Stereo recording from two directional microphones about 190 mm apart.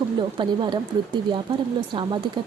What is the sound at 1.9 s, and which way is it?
Speech, 25° right (ahead or behind).